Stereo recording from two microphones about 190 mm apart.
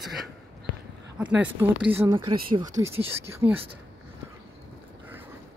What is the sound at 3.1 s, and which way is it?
Speech, 10° right (ahead or behind).